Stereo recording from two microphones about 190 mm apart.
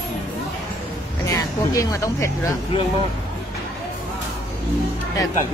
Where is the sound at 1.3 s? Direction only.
20° left (ahead or behind).